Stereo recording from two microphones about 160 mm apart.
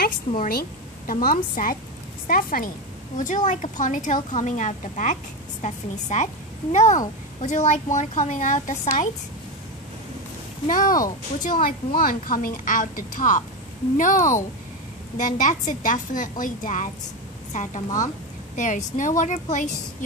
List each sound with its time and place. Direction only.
0.4 s speech: 65° left (ahead or behind)
3.2 s speech: 50° left (ahead or behind)
10.7 s speech: 60° left (ahead or behind)